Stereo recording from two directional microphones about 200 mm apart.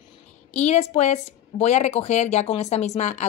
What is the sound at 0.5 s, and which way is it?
Speech, 35° left (ahead or behind).